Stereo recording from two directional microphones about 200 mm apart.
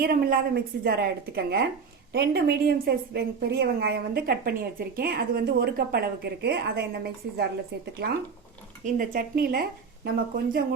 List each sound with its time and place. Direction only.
0.0 s a woman's voice: 50° right (ahead or behind)